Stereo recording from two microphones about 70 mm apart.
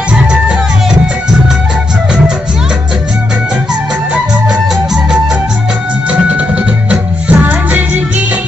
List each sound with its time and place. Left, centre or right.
6.9 s music: right